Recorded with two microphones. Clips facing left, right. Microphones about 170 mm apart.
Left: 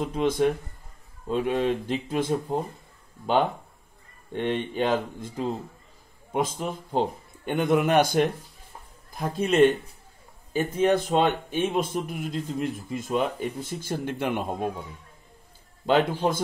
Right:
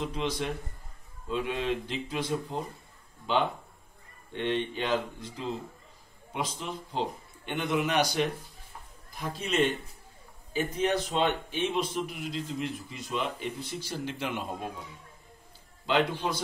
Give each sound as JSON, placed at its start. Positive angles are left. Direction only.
{"t": 0.0, "sound": "speech", "side_deg": 50}
{"t": 9.4, "sound": "speech", "side_deg": 50}
{"t": 15.8, "sound": "speech", "side_deg": 50}